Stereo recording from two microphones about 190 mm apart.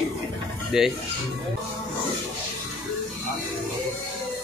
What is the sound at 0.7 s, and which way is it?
Speech, 5° right (ahead or behind).